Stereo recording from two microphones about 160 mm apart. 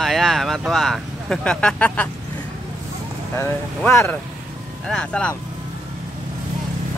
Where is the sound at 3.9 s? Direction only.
15° left (ahead or behind).